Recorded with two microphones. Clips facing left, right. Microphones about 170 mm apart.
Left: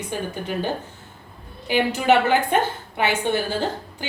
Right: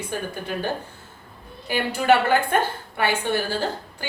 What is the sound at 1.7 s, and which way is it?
A woman's voice, 15° left (ahead or behind).